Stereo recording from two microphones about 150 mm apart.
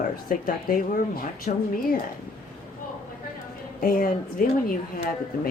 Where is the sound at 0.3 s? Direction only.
70° left (ahead or behind).